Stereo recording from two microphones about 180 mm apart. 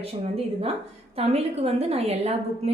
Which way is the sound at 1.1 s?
35° right (ahead or behind).